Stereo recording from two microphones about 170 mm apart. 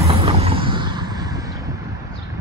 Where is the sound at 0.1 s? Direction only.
30° right (ahead or behind).